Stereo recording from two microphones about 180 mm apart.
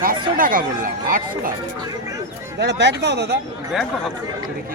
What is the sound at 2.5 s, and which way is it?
Speech, 70° right (ahead or behind).